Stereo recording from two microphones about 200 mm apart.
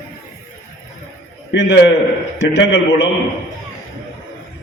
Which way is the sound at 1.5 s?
65° left (ahead or behind).